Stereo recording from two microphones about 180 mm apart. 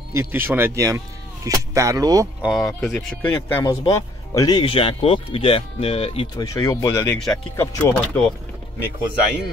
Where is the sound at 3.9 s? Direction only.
20° left (ahead or behind).